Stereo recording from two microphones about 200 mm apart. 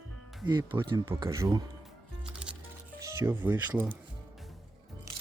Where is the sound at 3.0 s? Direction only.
15° right (ahead or behind).